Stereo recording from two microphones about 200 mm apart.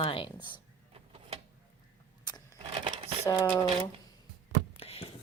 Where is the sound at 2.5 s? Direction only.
25° right (ahead or behind).